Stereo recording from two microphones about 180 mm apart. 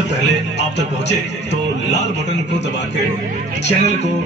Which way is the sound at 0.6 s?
75° left (ahead or behind).